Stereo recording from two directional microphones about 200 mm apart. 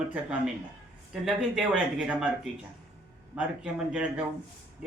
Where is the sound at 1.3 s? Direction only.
5° right (ahead or behind).